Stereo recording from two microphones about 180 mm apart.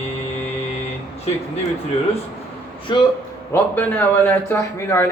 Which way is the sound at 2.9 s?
25° left (ahead or behind).